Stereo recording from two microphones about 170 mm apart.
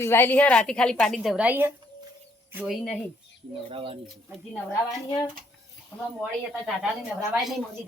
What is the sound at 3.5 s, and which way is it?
Speech, 30° right (ahead or behind).